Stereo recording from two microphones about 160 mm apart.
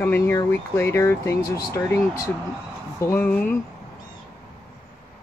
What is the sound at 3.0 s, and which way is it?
Speech, 15° left (ahead or behind).